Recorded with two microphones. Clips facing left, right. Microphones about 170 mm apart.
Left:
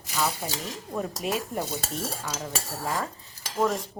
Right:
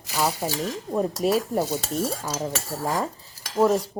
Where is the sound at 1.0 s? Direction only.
40° right (ahead or behind).